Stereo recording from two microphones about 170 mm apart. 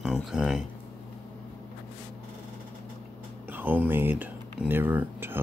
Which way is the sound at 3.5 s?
10° right (ahead or behind).